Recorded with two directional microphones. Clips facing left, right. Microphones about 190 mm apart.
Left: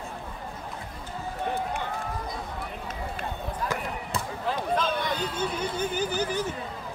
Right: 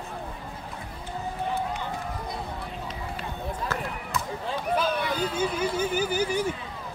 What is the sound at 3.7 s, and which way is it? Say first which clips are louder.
Basketball bounce: even; 15° left (ahead or behind).